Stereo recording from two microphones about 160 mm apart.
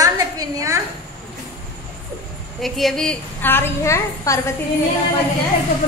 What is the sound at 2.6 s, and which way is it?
A woman's voice, centre (ahead or behind).